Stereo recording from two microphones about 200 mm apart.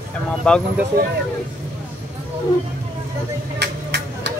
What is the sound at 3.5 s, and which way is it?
Vehicle, 55° right (ahead or behind).